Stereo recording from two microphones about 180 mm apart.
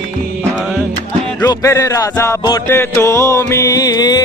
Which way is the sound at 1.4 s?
15° left (ahead or behind).